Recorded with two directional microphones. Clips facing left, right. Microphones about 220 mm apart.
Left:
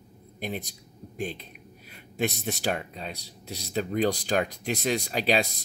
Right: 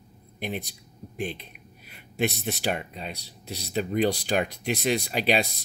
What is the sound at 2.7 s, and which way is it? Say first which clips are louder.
Speech: even; 5° right (ahead or behind).